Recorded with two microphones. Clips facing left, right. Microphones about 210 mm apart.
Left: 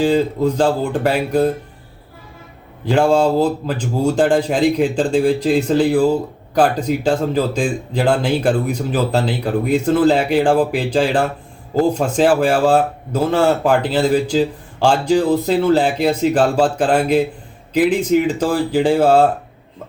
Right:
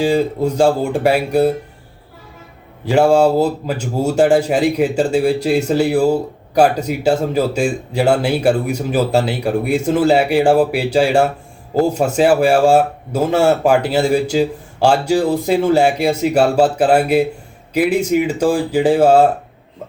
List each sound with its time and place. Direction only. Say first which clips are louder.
0.0 s speech: even; 10° right (ahead or behind)
2.8 s speech: right 2 dB; 10° right (ahead or behind)